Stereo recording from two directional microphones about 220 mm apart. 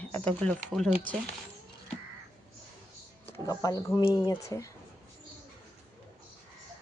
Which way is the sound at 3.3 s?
15° left (ahead or behind).